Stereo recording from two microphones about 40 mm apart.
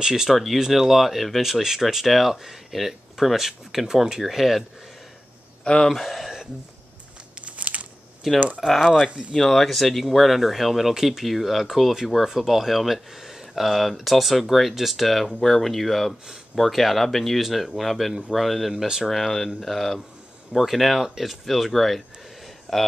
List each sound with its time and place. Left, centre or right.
0.0 s speech: centre
5.6 s speech: left
5.9 s speech: centre
7.4 s a sound: right
8.5 s speech: centre